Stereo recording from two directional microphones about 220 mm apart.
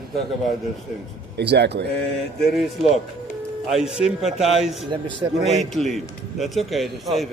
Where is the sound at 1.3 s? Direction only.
50° right (ahead or behind).